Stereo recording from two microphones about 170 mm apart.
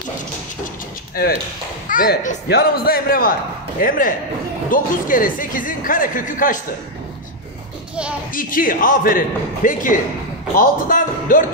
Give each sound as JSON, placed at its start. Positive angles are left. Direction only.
{"t": 1.9, "sound": "a man's voice", "side_deg": 55}
{"t": 8.3, "sound": "a man's voice", "side_deg": 55}